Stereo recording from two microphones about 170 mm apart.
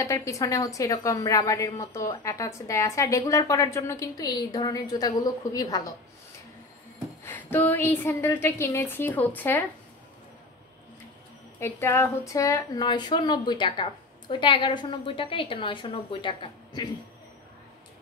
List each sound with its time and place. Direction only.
0.0 s a woman's voice: 15° left (ahead or behind)
7.2 s a woman's voice: 10° left (ahead or behind)
11.6 s a woman's voice: 15° left (ahead or behind)